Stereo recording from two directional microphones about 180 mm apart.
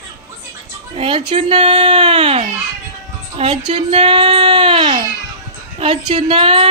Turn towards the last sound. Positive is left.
turn(degrees=-30)  # may be behind; listen again after turning